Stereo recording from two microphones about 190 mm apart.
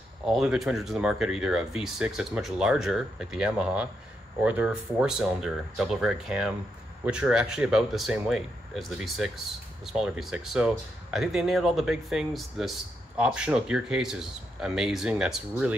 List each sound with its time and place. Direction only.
0.3 s speech: centre (ahead or behind)